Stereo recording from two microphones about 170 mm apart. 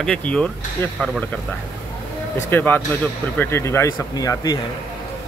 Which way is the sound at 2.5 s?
10° left (ahead or behind).